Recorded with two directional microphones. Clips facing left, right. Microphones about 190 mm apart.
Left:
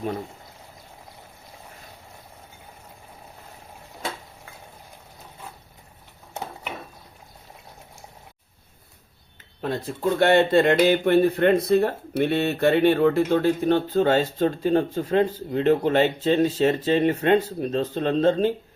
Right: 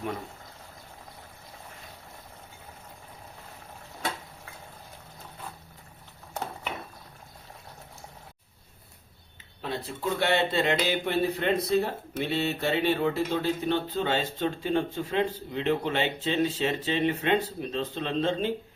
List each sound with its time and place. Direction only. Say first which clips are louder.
9.6 s speech: left 6 dB; 45° left (ahead or behind)